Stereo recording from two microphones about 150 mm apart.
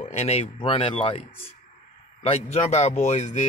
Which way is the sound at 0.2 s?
45° left (ahead or behind).